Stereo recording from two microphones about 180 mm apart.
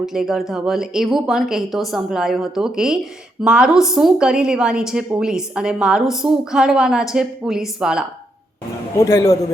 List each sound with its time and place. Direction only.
0.0 s a woman's voice: centre (ahead or behind)
9.0 s a man's voice: 15° left (ahead or behind)